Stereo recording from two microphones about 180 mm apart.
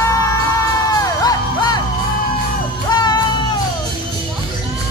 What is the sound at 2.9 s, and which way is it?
Music, 25° left (ahead or behind).